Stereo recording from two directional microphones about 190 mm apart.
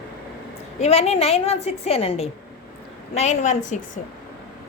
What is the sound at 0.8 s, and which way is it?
A woman's voice, 35° left (ahead or behind).